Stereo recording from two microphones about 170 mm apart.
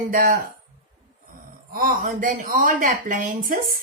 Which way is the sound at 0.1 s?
55° right (ahead or behind).